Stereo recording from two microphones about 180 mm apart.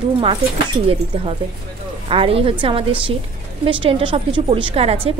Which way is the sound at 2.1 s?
30° right (ahead or behind).